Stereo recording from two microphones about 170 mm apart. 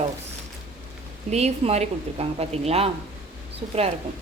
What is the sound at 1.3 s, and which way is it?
A woman's voice, 40° right (ahead or behind).